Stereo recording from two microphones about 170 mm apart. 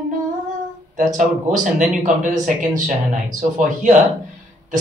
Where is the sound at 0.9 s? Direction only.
50° right (ahead or behind).